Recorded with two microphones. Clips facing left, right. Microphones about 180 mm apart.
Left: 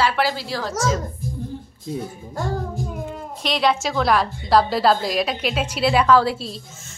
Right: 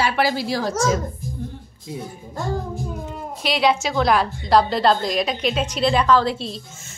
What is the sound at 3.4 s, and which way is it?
A woman's voice, centre (ahead or behind).